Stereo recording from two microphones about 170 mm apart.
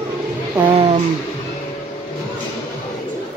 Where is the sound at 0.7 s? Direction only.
35° right (ahead or behind).